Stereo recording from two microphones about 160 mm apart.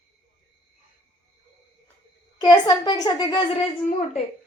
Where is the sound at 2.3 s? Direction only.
25° left (ahead or behind).